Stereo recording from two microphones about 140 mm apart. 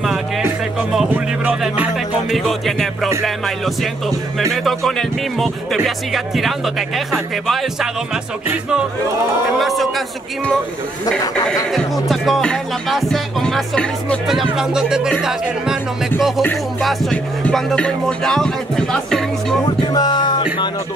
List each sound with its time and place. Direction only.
1.0 s music: 10° right (ahead or behind)
2.3 s music: centre (ahead or behind)
4.4 s music: centre (ahead or behind)
9.6 s music: centre (ahead or behind)
11.7 s music: centre (ahead or behind)
16.2 s music: centre (ahead or behind)
19.6 s music: 30° left (ahead or behind)